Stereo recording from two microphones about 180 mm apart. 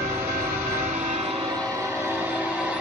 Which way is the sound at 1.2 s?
30° right (ahead or behind).